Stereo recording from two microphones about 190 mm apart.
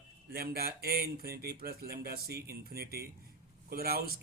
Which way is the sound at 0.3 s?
55° right (ahead or behind).